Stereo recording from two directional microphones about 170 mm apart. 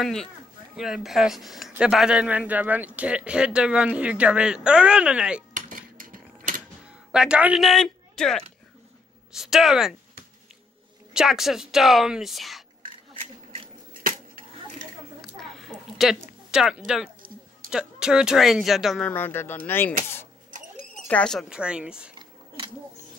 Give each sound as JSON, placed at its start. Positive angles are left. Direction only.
{"t": 0.0, "sound": "speech", "side_deg": 5}
{"t": 5.5, "sound": "a sound", "side_deg": -55}
{"t": 7.1, "sound": "speech", "side_deg": -5}
{"t": 11.1, "sound": "speech", "side_deg": 0}
{"t": 15.3, "sound": "a sound", "side_deg": 0}
{"t": 16.4, "sound": "speech", "side_deg": -5}
{"t": 21.1, "sound": "speech", "side_deg": 5}